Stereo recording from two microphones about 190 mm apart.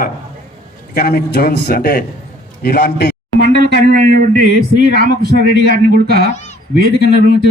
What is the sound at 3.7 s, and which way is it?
A man's voice, 50° right (ahead or behind).